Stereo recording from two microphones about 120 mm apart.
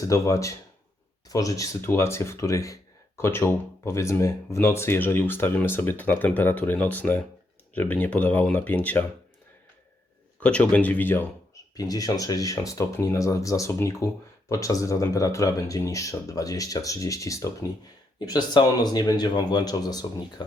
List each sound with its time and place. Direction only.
0.0 s speech: 25° left (ahead or behind)
10.4 s speech: 10° left (ahead or behind)
11.7 s speech: 30° left (ahead or behind)